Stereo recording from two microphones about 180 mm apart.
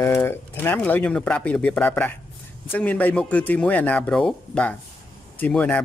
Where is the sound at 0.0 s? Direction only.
15° left (ahead or behind).